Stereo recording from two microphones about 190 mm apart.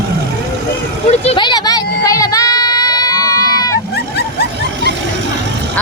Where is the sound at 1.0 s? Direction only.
30° left (ahead or behind).